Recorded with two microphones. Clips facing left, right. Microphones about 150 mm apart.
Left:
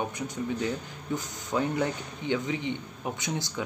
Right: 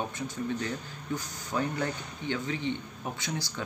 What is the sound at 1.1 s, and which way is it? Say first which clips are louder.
Speech: left 3 dB; 20° left (ahead or behind).